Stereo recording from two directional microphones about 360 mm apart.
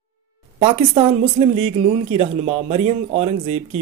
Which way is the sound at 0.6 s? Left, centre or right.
Centre.